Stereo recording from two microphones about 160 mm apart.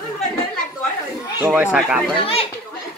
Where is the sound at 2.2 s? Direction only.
35° left (ahead or behind).